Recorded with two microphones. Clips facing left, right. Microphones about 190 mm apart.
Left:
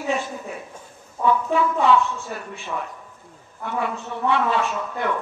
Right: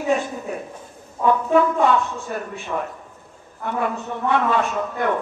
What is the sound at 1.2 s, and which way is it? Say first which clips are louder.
A man's voice: right 3 dB; 50° right (ahead or behind).